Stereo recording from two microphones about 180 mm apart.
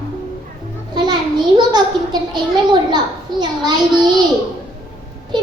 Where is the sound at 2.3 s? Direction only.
25° right (ahead or behind).